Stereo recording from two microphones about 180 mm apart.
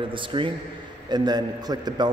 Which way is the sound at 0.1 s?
30° right (ahead or behind).